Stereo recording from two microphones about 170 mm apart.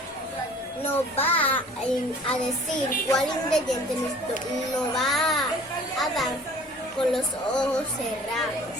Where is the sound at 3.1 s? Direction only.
5° left (ahead or behind).